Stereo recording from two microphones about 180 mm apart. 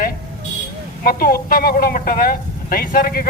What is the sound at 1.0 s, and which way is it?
A woman's voice, 55° left (ahead or behind).